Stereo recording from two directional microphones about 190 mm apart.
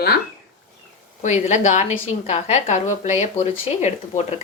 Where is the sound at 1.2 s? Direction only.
40° left (ahead or behind).